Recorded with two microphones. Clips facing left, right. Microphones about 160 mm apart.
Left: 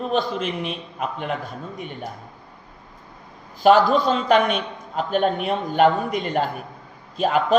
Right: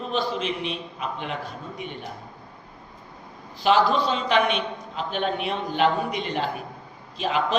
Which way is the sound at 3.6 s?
45° left (ahead or behind).